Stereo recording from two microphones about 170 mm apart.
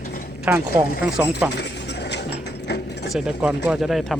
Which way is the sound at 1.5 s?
80° left.